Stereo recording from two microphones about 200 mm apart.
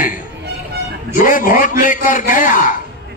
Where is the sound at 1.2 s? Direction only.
45° left (ahead or behind).